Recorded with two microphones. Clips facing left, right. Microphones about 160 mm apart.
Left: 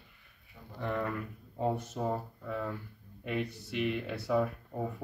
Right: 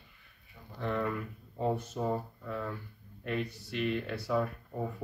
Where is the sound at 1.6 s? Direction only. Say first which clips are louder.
Even; 15° left (ahead or behind).